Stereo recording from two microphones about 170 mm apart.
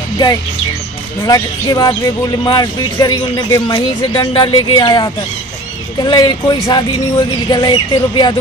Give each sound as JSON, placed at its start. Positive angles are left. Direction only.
{"t": 0.2, "sound": "speech", "side_deg": 25}